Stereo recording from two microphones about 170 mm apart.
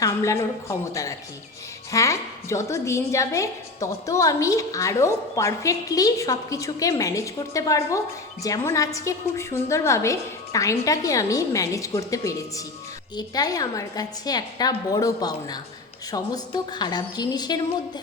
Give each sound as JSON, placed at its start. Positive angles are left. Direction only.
{"t": 0.0, "sound": "a woman's voice", "side_deg": 15}
{"t": 1.9, "sound": "a woman's voice", "side_deg": 20}